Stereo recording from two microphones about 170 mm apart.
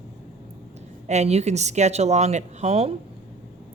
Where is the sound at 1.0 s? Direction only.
40° right (ahead or behind).